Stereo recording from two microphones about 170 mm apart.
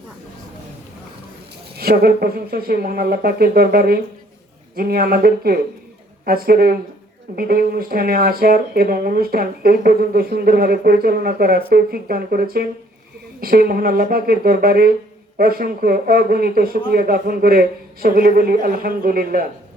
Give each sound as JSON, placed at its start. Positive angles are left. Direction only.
{"t": 1.7, "sound": "speech", "side_deg": -65}